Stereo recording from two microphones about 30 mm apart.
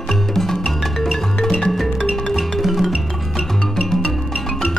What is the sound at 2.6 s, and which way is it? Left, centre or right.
Music, centre.